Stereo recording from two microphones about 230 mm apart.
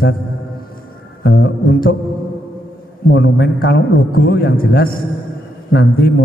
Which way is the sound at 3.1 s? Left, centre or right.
Left.